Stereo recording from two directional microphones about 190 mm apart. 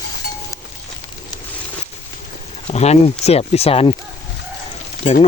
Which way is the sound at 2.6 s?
35° left (ahead or behind).